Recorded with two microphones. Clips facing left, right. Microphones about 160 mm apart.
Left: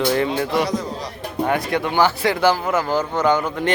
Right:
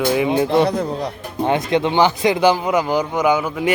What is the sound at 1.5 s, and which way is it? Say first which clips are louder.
Speech: right 5 dB; 20° right (ahead or behind).